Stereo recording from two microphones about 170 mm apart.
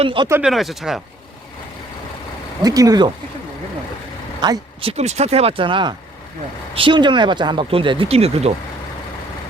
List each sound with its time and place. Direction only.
0.0 s speech: 30° right (ahead or behind)
0.4 s speech: centre (ahead or behind)
2.6 s speech: 20° right (ahead or behind)
4.4 s speech: 30° right (ahead or behind)